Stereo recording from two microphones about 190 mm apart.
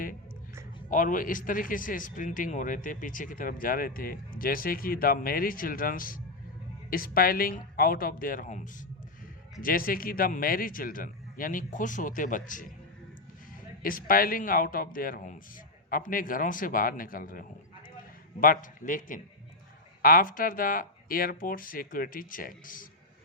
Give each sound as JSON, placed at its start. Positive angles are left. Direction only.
{"t": 0.9, "sound": "speech", "side_deg": 45}
{"t": 13.8, "sound": "speech", "side_deg": 50}